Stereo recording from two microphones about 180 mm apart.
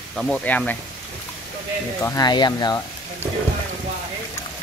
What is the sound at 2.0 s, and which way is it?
Speech, 20° left (ahead or behind).